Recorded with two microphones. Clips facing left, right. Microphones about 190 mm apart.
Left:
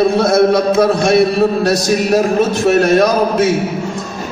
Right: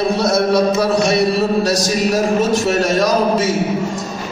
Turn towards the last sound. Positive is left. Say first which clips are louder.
# left 2 dB
turn(degrees=60)  # may be behind; listen again after turning